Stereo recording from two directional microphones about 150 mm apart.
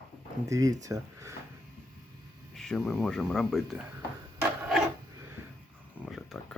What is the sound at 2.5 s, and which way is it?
Speech, centre (ahead or behind).